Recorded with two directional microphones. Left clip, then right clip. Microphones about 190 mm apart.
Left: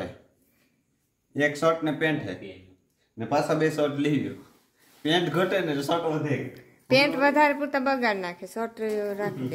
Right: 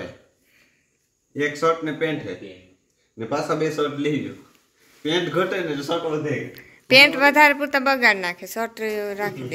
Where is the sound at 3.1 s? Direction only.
20° left (ahead or behind).